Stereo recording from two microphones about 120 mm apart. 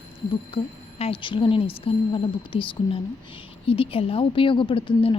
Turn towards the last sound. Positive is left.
turn(degrees=50)  # may be behind; listen again after turning